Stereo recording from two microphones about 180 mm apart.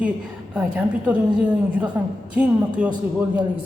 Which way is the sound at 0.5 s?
5° right (ahead or behind).